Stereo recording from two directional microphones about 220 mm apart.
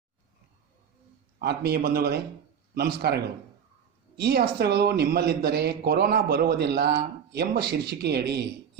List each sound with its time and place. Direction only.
1.4 s speech: 45° right (ahead or behind)